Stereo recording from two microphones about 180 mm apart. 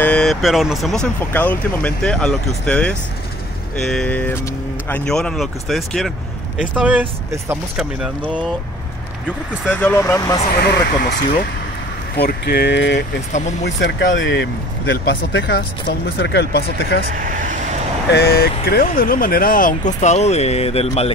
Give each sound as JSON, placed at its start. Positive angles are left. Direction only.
{"t": 0.0, "sound": "speech", "side_deg": 5}
{"t": 9.7, "sound": "speech", "side_deg": 10}
{"t": 10.6, "sound": "speech", "side_deg": 65}
{"t": 12.2, "sound": "speech", "side_deg": 60}
{"t": 17.1, "sound": "speech", "side_deg": -50}
{"t": 18.1, "sound": "speech", "side_deg": 60}